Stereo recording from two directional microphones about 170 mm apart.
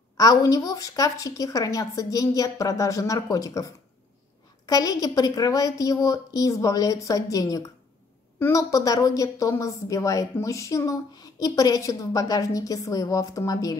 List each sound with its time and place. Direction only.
0.2 s a woman's voice: 20° left (ahead or behind)